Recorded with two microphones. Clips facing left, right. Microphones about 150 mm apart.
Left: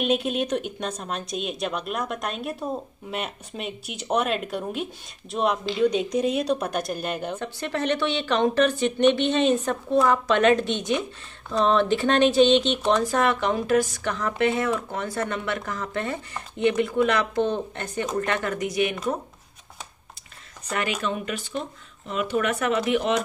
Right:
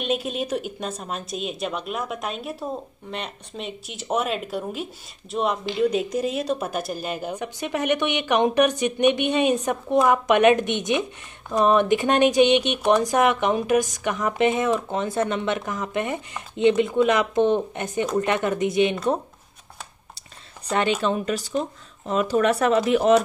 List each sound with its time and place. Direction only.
0.0 s a woman's voice: centre (ahead or behind); by 18.9 s 25° right (ahead or behind)
20.7 s speech: 30° right (ahead or behind)